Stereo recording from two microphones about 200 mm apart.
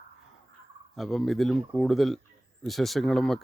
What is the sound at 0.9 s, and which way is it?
Speech, centre (ahead or behind).